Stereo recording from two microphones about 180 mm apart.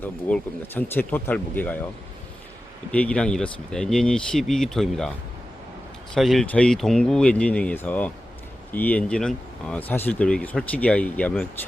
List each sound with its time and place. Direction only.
0.3 s speech: 10° left (ahead or behind)
2.9 s speech: 5° left (ahead or behind)
6.1 s speech: centre (ahead or behind)